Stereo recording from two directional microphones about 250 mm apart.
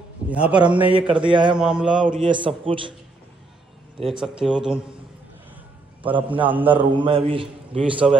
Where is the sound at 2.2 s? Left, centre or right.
Right.